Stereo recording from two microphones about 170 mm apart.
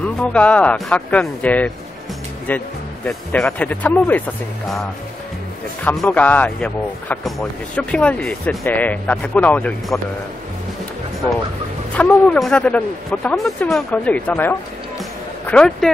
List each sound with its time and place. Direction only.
0.0 s a man's voice: 5° left (ahead or behind)
5.9 s a man's voice: 10° left (ahead or behind)
11.9 s a man's voice: 5° left (ahead or behind)